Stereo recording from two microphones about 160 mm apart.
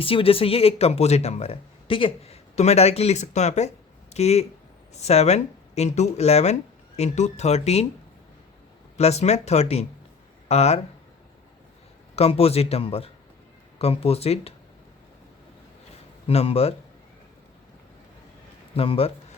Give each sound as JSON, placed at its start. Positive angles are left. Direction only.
{"t": 0.0, "sound": "speech", "side_deg": 35}
{"t": 9.0, "sound": "speech", "side_deg": 40}
{"t": 12.1, "sound": "speech", "side_deg": 40}
{"t": 16.2, "sound": "speech", "side_deg": 40}
{"t": 18.8, "sound": "speech", "side_deg": 35}